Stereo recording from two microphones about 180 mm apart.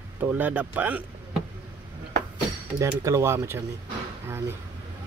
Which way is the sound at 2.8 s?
15° right (ahead or behind).